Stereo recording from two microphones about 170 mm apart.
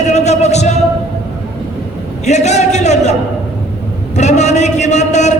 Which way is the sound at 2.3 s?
40° left (ahead or behind).